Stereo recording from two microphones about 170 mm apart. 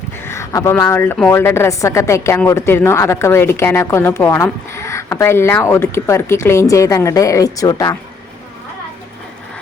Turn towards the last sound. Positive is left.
turn(degrees=20)  # may be behind; listen again after turning